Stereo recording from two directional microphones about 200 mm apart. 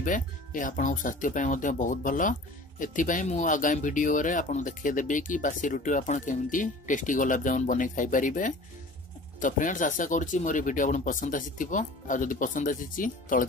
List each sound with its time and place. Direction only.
0.0 s speech: 40° left (ahead or behind)